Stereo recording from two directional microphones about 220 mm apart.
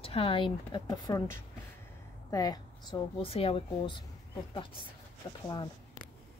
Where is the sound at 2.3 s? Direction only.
20° left (ahead or behind).